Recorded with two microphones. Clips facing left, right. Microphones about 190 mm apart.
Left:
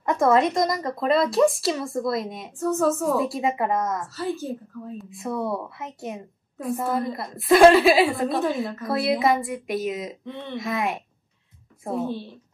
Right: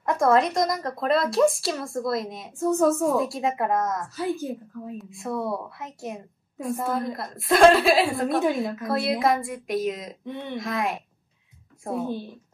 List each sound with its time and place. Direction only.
0.0 s a woman's voice: centre (ahead or behind)
2.6 s a woman's voice: 15° right (ahead or behind)
3.0 s a woman's voice: centre (ahead or behind)
4.4 s a woman's voice: 15° right (ahead or behind)
4.9 s a woman's voice: centre (ahead or behind)
10.2 s a woman's voice: 15° right (ahead or behind)
10.6 s a woman's voice: centre (ahead or behind)
12.0 s a woman's voice: 15° right (ahead or behind)